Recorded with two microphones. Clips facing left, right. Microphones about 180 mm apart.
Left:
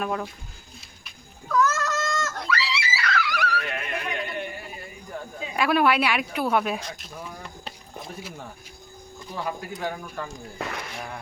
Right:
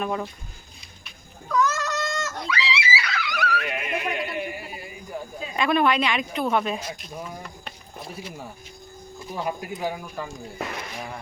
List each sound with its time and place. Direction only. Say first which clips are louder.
1.5 s goat: even; centre (ahead or behind)
3.4 s a sound: right 1 dB; 15° right (ahead or behind)
5.5 s a woman's voice: even; 5° left (ahead or behind)
6.7 s speech: right 2 dB; 5° right (ahead or behind)
7.4 s rowboat: even; 25° left (ahead or behind)
9.1 s speech: right 2 dB; 15° right (ahead or behind)